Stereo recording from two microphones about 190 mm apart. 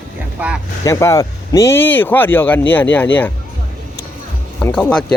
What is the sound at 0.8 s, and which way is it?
Speech, 15° left (ahead or behind).